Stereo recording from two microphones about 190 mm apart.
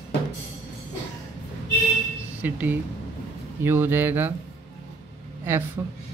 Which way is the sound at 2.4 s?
10° right (ahead or behind).